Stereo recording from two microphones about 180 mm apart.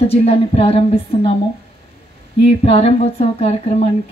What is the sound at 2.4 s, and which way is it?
Speech, 35° left (ahead or behind).